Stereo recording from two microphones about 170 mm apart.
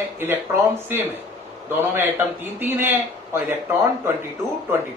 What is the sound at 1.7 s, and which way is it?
A man's voice, 10° right (ahead or behind).